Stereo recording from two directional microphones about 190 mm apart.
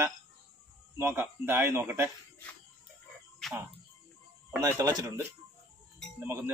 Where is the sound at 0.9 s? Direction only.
10° right (ahead or behind).